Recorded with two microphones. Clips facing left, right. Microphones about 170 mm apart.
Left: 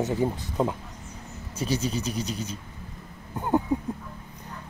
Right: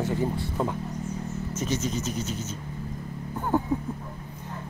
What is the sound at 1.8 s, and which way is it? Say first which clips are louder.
Speech: even; 10° left (ahead or behind).